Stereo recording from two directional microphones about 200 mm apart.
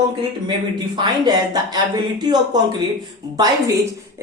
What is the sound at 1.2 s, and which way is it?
Speech, 20° right (ahead or behind).